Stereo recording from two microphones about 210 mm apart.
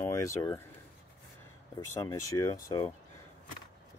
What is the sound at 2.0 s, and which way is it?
Speech, 15° left (ahead or behind).